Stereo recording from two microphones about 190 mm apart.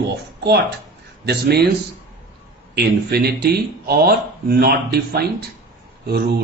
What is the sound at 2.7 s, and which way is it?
Speech, 55° right (ahead or behind).